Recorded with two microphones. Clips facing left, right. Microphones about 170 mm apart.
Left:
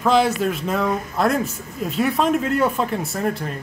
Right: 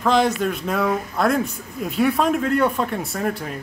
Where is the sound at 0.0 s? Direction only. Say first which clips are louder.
Left 1 dB; 5° left (ahead or behind).